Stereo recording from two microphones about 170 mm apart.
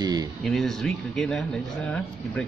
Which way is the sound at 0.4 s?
Centre (ahead or behind).